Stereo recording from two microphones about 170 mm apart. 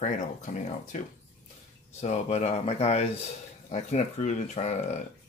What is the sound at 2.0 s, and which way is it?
Speech, 40° left (ahead or behind).